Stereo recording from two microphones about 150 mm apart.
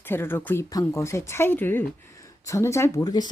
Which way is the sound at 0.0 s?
15° left (ahead or behind).